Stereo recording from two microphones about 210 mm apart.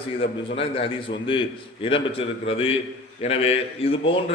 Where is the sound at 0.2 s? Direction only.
25° left (ahead or behind).